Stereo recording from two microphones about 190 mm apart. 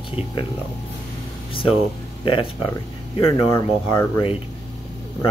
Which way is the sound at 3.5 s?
15° left (ahead or behind).